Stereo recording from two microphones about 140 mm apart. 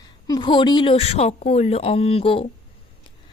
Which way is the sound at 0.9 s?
45° left (ahead or behind).